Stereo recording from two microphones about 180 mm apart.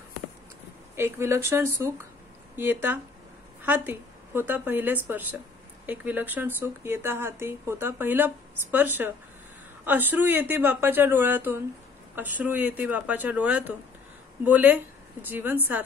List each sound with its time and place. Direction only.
0.9 s speech: 15° right (ahead or behind)